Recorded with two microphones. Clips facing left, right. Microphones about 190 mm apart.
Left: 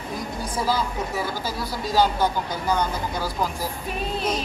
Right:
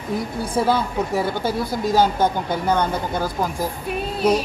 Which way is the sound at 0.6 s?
60° right (ahead or behind).